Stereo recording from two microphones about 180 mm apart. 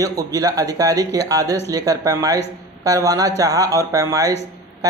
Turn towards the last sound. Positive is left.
turn(degrees=-20)  # may be behind; listen again after turning